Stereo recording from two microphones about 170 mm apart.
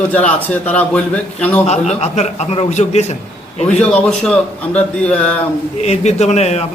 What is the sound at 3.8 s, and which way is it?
A man's voice, 10° left (ahead or behind).